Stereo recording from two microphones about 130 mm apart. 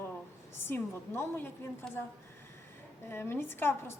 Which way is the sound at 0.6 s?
20° left (ahead or behind).